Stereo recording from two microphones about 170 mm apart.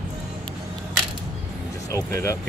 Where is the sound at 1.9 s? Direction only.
15° left (ahead or behind).